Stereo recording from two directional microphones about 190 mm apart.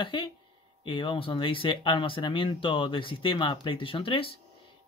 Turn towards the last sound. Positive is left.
turn(degrees=30)  # may be behind; listen again after turning